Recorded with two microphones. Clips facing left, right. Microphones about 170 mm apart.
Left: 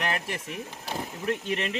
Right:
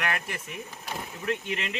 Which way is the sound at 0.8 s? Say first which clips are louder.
Left 2 dB; 30° left (ahead or behind).